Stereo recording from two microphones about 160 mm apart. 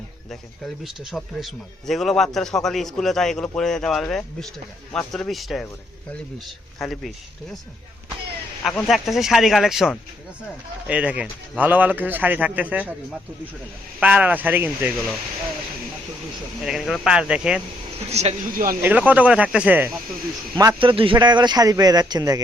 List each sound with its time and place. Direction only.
0.3 s speech: centre (ahead or behind)
6.7 s speech: centre (ahead or behind)
8.6 s speech: centre (ahead or behind)
14.0 s speech: 10° right (ahead or behind)
16.6 s speech: centre (ahead or behind)
18.1 s speech: 40° right (ahead or behind)
18.5 s speech: 65° right (ahead or behind)
18.8 s speech: 10° right (ahead or behind)
20.7 s a man's voice: 35° right (ahead or behind)